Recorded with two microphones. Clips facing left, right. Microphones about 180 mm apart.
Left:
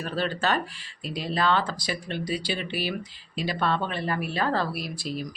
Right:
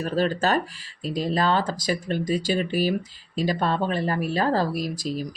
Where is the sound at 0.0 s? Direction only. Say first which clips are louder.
Right 5 dB; 40° right (ahead or behind).